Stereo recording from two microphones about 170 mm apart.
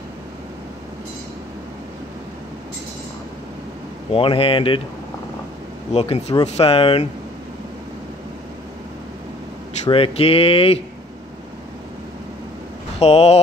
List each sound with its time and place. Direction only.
4.1 s speech: 30° left (ahead or behind)
5.9 s speech: 40° left (ahead or behind)
9.8 s speech: 35° left (ahead or behind)
13.0 s speech: 40° left (ahead or behind)